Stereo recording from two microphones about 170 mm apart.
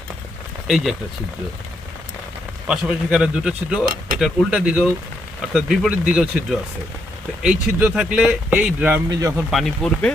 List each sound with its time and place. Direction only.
2.6 s speech: 5° right (ahead or behind)
9.5 s speech: centre (ahead or behind)